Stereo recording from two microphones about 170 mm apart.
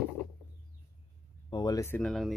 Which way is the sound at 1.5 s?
20° left (ahead or behind).